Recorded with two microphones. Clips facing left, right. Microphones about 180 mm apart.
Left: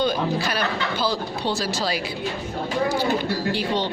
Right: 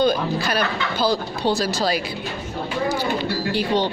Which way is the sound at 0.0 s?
45° right (ahead or behind).